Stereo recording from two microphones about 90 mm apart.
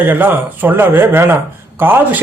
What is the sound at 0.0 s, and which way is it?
A man's voice, 20° right (ahead or behind).